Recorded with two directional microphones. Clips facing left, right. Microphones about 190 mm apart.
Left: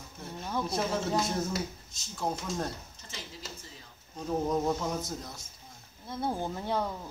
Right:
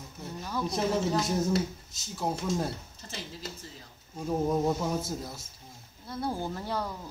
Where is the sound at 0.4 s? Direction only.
25° left (ahead or behind).